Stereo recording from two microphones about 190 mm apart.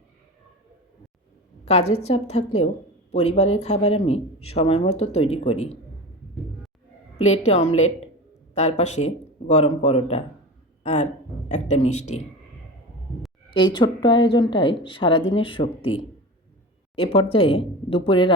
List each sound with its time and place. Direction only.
1.6 s speech: 35° left (ahead or behind)
7.2 s speech: 35° left (ahead or behind)
13.5 s a woman's voice: 25° left (ahead or behind)